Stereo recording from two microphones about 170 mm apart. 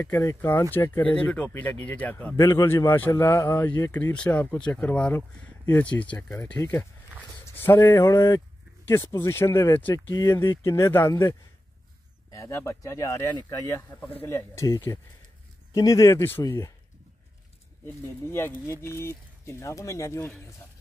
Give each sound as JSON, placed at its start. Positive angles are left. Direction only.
{"t": 0.0, "sound": "a man's voice", "side_deg": 20}
{"t": 18.2, "sound": "a man's voice", "side_deg": 15}